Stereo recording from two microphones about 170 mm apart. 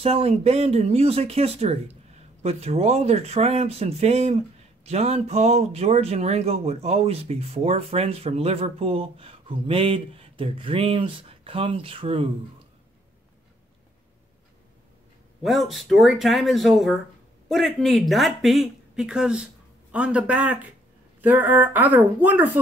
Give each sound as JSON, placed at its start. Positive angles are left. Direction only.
{"t": 0.0, "sound": "speech", "side_deg": -35}
{"t": 15.4, "sound": "speech", "side_deg": 0}